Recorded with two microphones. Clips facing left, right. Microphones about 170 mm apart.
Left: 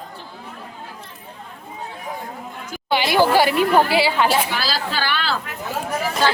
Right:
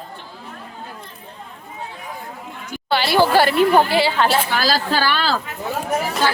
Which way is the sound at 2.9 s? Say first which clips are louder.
Even; 15° left (ahead or behind).